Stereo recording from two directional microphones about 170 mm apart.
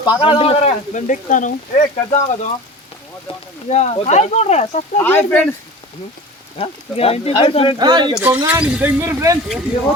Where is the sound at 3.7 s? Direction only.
40° left (ahead or behind).